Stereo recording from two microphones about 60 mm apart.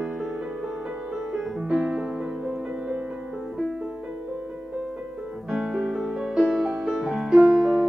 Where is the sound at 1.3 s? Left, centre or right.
Centre.